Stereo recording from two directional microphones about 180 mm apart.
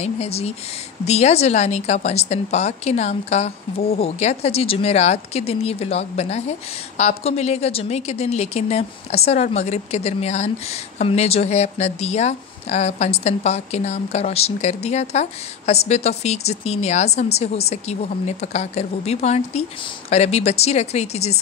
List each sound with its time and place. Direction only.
0.0 s a woman's voice: 35° left (ahead or behind)